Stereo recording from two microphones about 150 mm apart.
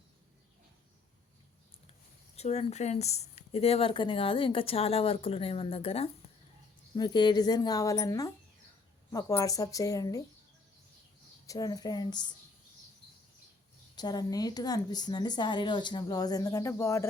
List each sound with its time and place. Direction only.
2.3 s speech: 45° left (ahead or behind)
6.9 s a woman's voice: 30° left (ahead or behind)
11.4 s a woman's voice: 25° left (ahead or behind)
13.9 s a woman's voice: 25° left (ahead or behind)